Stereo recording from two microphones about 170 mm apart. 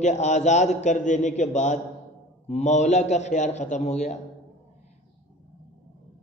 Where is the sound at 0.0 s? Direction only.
45° left (ahead or behind).